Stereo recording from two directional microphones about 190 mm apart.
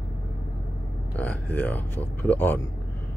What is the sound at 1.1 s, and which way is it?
Speech, 10° left (ahead or behind).